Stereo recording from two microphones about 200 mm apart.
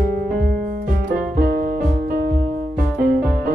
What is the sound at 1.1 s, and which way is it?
Music, 45° right (ahead or behind).